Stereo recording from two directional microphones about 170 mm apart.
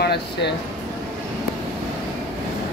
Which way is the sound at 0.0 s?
70° left (ahead or behind).